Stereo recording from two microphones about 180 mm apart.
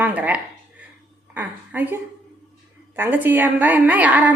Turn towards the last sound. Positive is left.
turn(degrees=-10)  # may be behind; listen again after turning